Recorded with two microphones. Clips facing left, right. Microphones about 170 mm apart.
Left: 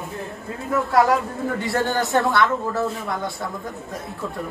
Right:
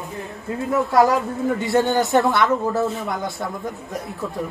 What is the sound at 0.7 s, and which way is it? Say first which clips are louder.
A woman's voice: right 1 dB; centre (ahead or behind).